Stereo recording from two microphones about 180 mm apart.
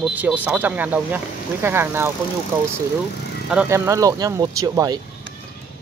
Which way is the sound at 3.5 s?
10° right (ahead or behind).